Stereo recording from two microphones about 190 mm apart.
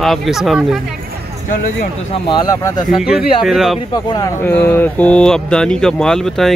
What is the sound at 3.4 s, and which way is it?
Speech, centre (ahead or behind).